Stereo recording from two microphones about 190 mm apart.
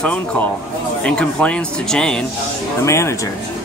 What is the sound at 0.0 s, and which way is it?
Speech, 5° left (ahead or behind).